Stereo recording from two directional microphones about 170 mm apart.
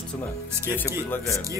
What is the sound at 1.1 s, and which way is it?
Speech, 20° left (ahead or behind).